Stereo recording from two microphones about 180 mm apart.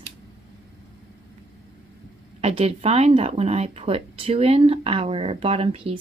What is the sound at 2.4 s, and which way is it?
Speech, 35° right (ahead or behind).